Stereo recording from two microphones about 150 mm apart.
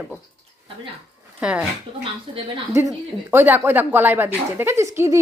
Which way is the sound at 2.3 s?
40° right (ahead or behind).